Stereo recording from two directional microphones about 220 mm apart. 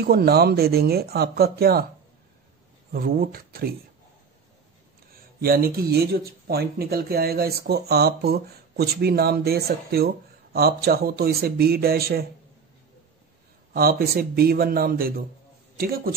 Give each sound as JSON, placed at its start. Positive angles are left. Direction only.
{"t": 0.0, "sound": "speech", "side_deg": -45}
{"t": 2.9, "sound": "speech", "side_deg": -40}
{"t": 5.1, "sound": "speech", "side_deg": -45}
{"t": 13.7, "sound": "speech", "side_deg": -45}